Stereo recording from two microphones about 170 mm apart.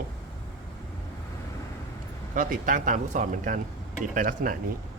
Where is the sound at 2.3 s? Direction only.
50° right (ahead or behind).